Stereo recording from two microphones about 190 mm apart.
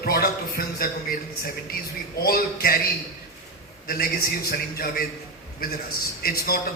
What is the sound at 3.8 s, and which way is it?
A man's voice, 55° left (ahead or behind).